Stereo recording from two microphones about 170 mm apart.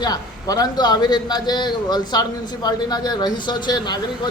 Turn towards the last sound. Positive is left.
turn(degrees=25)  # may be behind; listen again after turning